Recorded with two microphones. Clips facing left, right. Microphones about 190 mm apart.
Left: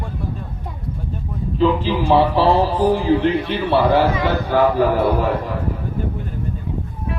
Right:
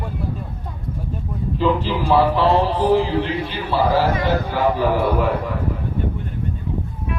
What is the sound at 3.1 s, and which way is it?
A man's voice, 55° left (ahead or behind).